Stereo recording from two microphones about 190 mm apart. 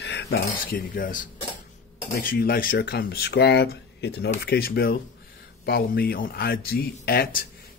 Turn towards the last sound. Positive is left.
turn(degrees=55)  # may be behind; listen again after turning